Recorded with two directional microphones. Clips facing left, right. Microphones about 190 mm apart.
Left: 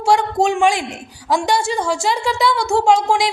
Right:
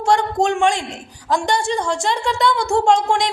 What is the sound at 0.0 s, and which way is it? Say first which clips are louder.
A man's voice: left 1 dB; 5° left (ahead or behind).